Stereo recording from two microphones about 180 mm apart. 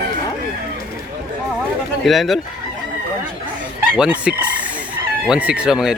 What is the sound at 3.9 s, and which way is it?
Chicken, 5° right (ahead or behind).